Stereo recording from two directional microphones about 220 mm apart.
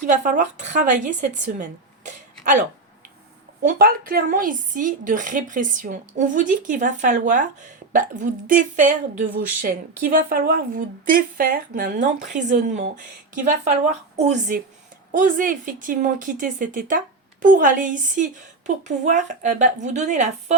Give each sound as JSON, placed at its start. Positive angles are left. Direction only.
{"t": 0.0, "sound": "a woman's voice", "side_deg": -35}
{"t": 2.0, "sound": "a sound", "side_deg": -35}
{"t": 3.6, "sound": "a woman's voice", "side_deg": -40}
{"t": 10.2, "sound": "a woman's voice", "side_deg": -40}